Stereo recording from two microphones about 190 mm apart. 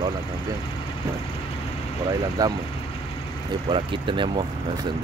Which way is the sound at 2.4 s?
20° right (ahead or behind).